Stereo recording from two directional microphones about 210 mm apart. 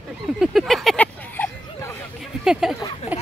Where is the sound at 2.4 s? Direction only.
5° right (ahead or behind).